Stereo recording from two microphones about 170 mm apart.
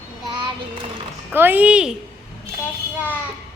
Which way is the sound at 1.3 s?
10° right (ahead or behind).